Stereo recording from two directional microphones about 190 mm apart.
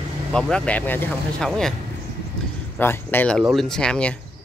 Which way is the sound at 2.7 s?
10° left (ahead or behind).